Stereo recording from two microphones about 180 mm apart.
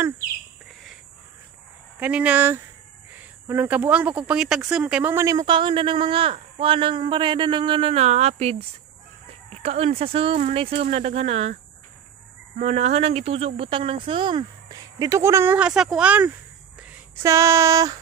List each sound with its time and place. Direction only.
2.0 s speech: 5° right (ahead or behind); by 11.5 s 35° right (ahead or behind)
12.5 s speech: 40° right (ahead or behind); by 16.3 s 10° right (ahead or behind)
16.8 s female singing: 10° right (ahead or behind)